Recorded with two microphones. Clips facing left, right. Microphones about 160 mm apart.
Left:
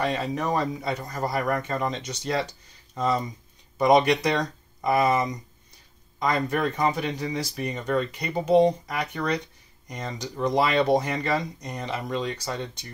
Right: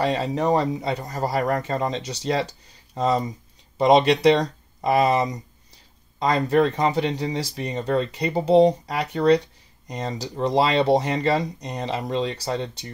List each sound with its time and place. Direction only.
0.0 s speech: 30° right (ahead or behind)